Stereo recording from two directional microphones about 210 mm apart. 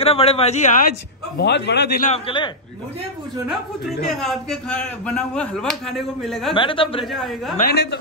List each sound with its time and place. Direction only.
0.0 s speech: 30° left (ahead or behind)
1.4 s a man's voice: 55° left (ahead or behind)
2.0 s speech: 30° left (ahead or behind)
4.2 s a man's voice: centre (ahead or behind)
6.5 s speech: 25° left (ahead or behind)
7.1 s a man's voice: centre (ahead or behind)
7.5 s speech: 45° left (ahead or behind)